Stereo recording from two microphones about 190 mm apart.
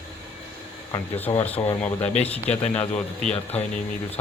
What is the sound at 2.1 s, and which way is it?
Speech, 35° left (ahead or behind).